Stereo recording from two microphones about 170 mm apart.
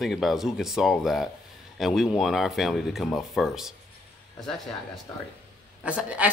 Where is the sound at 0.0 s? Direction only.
Centre (ahead or behind).